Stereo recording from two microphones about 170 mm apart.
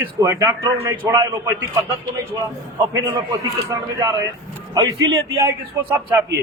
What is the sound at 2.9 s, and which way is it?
A man's voice, 20° right (ahead or behind).